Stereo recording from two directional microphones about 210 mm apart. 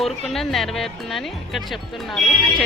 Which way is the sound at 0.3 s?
Centre (ahead or behind).